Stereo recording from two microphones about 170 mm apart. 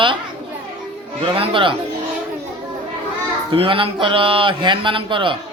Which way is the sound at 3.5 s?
30° right (ahead or behind).